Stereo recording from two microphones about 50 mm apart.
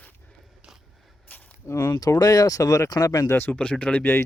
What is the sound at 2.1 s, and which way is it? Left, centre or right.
Speech, left.